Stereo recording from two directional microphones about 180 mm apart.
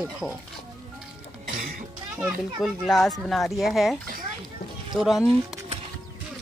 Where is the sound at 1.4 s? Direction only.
45° right (ahead or behind).